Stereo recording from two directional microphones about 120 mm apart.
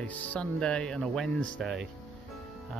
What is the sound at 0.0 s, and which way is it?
Speech, 15° left (ahead or behind).